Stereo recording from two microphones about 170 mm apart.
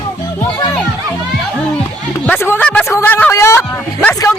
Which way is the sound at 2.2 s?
10° left (ahead or behind).